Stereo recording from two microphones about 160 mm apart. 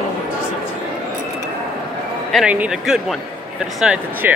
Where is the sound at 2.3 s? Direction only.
10° right (ahead or behind).